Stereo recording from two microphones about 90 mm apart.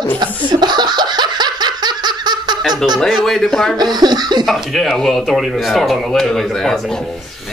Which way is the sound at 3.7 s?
50° right (ahead or behind).